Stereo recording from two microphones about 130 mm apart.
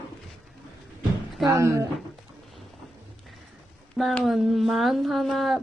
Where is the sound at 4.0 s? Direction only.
Centre (ahead or behind).